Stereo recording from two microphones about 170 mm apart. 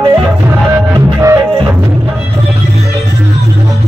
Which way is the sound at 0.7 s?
15° right (ahead or behind).